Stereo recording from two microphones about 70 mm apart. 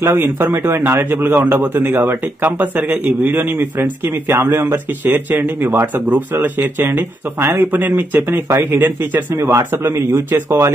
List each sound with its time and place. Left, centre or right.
0.0 s a man's voice: right
8.3 s speech: right